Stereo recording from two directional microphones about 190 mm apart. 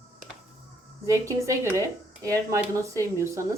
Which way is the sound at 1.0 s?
15° right (ahead or behind).